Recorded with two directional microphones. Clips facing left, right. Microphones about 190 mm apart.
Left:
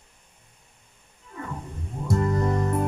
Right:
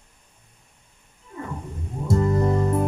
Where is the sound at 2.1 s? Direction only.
25° right (ahead or behind).